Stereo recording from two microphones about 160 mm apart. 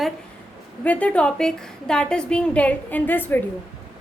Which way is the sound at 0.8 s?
10° left (ahead or behind).